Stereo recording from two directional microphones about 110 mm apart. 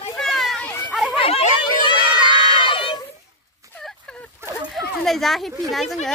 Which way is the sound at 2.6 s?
50° left (ahead or behind).